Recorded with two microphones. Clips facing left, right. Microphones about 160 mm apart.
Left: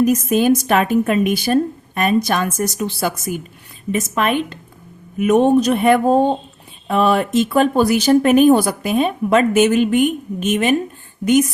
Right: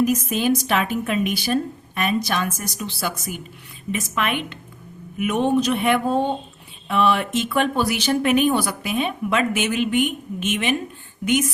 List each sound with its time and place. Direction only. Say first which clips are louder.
0.0 s a woman's voice: left 5 dB; 50° left (ahead or behind)